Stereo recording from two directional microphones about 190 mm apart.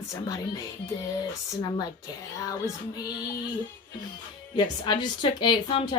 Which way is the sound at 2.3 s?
20° left (ahead or behind).